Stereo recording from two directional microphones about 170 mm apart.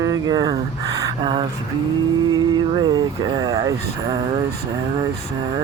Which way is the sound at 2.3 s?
25° right (ahead or behind).